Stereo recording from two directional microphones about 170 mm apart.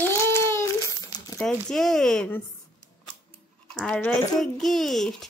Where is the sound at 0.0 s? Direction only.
15° left (ahead or behind).